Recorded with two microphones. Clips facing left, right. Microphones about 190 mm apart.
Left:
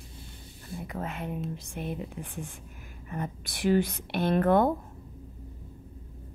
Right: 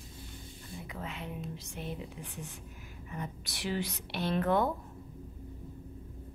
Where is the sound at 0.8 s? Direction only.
50° left (ahead or behind).